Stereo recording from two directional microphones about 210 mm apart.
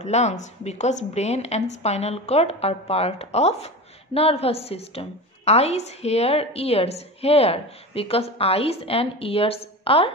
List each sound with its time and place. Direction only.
0.0 s a woman's voice: 35° left (ahead or behind)